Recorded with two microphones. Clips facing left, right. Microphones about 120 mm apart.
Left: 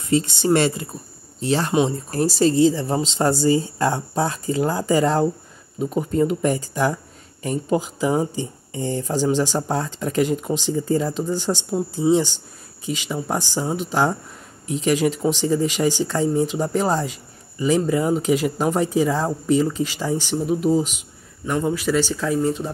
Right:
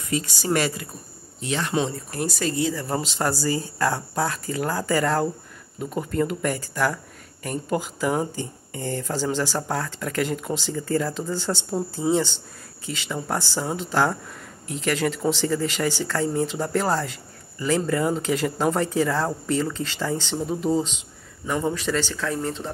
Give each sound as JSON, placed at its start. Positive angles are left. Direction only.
{"t": 0.0, "sound": "speech", "side_deg": 30}